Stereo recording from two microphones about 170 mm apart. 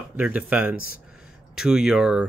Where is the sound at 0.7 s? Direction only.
60° left (ahead or behind).